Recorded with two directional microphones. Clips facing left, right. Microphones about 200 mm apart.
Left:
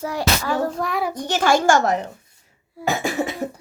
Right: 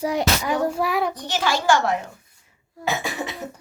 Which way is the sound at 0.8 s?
5° right (ahead or behind).